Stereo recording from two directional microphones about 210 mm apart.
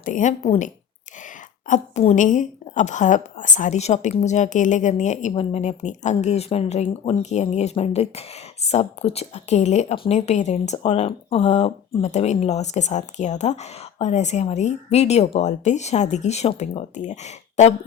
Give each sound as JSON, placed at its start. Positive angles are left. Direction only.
{"t": 0.0, "sound": "speech", "side_deg": 35}